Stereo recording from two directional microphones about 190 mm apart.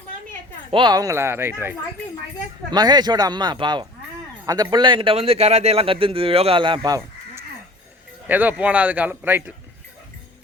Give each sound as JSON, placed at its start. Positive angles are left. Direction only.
{"t": 0.7, "sound": "a man's voice", "side_deg": -25}
{"t": 8.3, "sound": "speech", "side_deg": -10}